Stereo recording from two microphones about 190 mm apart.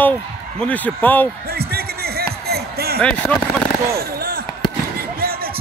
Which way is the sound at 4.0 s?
55° right (ahead or behind).